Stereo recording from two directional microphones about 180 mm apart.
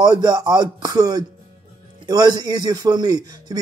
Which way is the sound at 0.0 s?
20° right (ahead or behind).